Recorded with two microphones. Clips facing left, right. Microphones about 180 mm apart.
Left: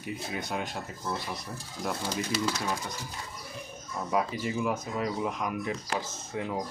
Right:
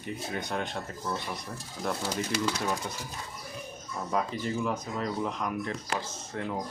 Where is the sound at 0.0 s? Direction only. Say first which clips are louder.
Even; 5° left (ahead or behind).